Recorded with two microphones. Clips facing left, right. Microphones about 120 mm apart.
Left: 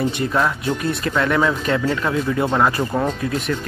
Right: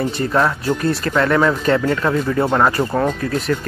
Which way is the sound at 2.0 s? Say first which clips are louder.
Right 3 dB; 15° right (ahead or behind).